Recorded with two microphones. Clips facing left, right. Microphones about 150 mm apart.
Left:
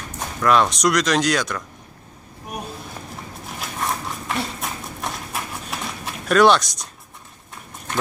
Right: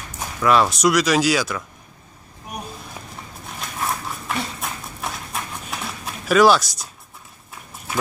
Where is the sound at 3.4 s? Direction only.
Centre (ahead or behind).